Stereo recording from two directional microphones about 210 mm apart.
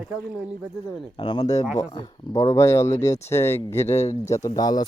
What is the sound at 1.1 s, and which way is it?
Speech, 20° left (ahead or behind).